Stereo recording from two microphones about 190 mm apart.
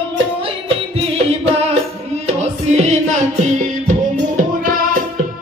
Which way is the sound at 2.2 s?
35° right (ahead or behind).